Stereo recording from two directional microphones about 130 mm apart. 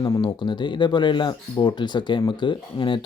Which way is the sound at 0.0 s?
30° left (ahead or behind).